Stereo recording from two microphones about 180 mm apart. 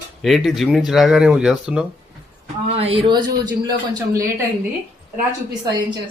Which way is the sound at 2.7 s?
30° right (ahead or behind).